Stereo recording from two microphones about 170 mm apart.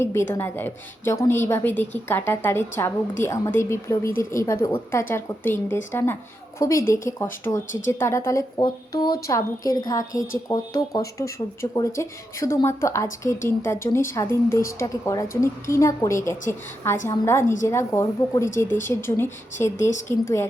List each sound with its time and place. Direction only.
0.0 s a woman's voice: 15° left (ahead or behind)